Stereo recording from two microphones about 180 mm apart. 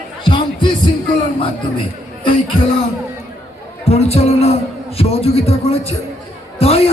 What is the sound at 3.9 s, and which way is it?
Speech, 35° left (ahead or behind).